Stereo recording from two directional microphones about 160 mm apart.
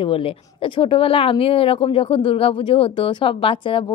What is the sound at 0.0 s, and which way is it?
Speech, 35° left (ahead or behind).